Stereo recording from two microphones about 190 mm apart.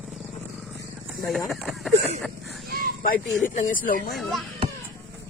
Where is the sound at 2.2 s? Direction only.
Centre (ahead or behind).